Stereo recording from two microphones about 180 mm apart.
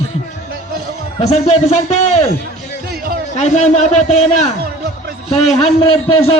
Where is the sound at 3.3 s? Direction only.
40° left (ahead or behind).